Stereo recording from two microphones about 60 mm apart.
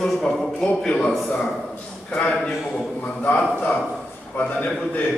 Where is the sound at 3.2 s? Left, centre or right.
Left.